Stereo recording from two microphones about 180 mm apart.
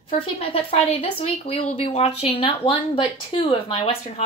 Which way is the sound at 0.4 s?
30° left (ahead or behind).